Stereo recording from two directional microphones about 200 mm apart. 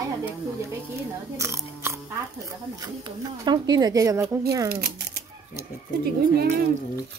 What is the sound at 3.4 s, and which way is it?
Speech, 20° right (ahead or behind).